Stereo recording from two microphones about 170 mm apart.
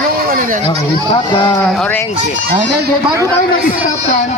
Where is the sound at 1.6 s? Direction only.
5° left (ahead or behind).